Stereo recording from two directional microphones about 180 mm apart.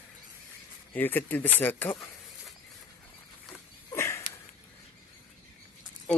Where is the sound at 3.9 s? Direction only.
15° left (ahead or behind).